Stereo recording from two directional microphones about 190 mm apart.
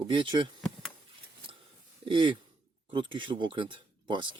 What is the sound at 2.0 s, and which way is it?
Speech, 25° right (ahead or behind).